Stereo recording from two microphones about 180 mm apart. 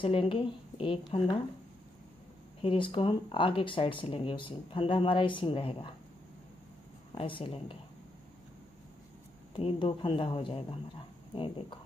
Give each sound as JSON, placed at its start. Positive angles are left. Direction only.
{"t": 0.0, "sound": "speech", "side_deg": 30}
{"t": 2.6, "sound": "speech", "side_deg": 30}
{"t": 7.2, "sound": "speech", "side_deg": 30}
{"t": 9.6, "sound": "speech", "side_deg": 30}